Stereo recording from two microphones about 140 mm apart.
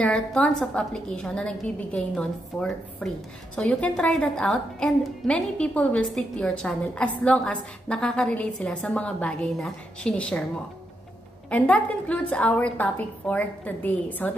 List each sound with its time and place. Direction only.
0.0 s a woman's voice: 10° left (ahead or behind)
11.5 s a woman's voice: 10° left (ahead or behind)